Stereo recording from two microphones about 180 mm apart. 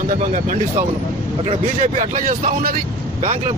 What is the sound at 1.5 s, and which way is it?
Speech, 45° right (ahead or behind).